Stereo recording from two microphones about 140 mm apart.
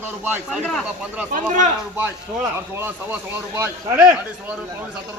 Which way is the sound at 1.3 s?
65° right (ahead or behind).